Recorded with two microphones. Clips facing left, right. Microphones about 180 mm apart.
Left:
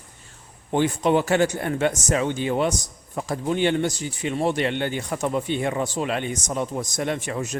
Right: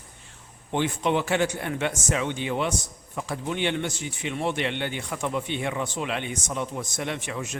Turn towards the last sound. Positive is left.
turn(degrees=40)  # may be behind; listen again after turning